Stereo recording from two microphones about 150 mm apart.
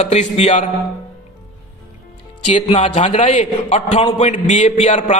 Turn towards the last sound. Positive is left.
turn(degrees=50)  # may be behind; listen again after turning